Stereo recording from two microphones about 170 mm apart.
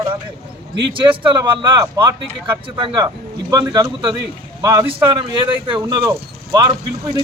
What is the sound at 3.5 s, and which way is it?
Speech, 20° right (ahead or behind).